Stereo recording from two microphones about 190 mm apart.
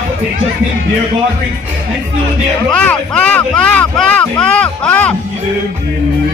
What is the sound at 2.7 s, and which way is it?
Speech, 5° left (ahead or behind).